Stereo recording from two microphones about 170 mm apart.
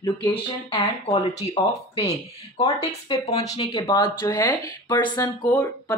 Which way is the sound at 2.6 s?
25° left (ahead or behind).